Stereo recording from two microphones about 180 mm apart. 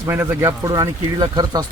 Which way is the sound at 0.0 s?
15° right (ahead or behind).